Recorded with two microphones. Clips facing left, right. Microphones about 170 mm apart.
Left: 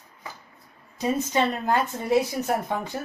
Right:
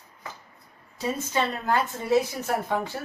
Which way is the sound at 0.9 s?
20° left (ahead or behind).